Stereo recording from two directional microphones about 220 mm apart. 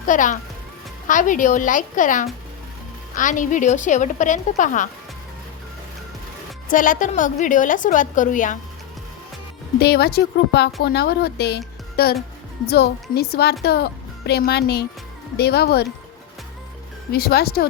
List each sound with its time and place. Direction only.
0.0 s a woman's voice: 35° left (ahead or behind)
6.7 s a woman's voice: 40° left (ahead or behind)
9.8 s a woman's voice: 45° left (ahead or behind)
17.1 s a woman's voice: 45° left (ahead or behind)